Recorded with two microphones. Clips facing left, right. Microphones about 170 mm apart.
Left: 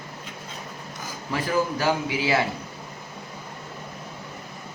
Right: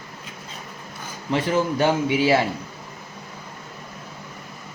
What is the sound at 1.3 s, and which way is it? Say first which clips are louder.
A man's voice: right 3 dB; 25° right (ahead or behind).